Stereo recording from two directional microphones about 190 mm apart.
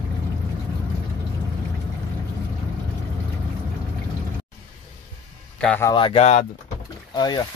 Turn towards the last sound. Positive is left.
turn(degrees=20)  # may be behind; listen again after turning